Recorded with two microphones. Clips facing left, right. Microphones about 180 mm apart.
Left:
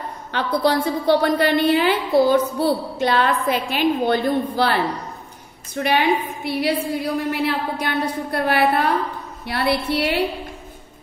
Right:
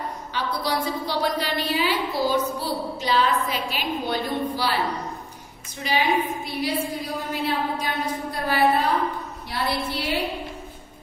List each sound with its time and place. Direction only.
0.3 s a woman's voice: 60° left (ahead or behind)
5.8 s a woman's voice: 60° left (ahead or behind)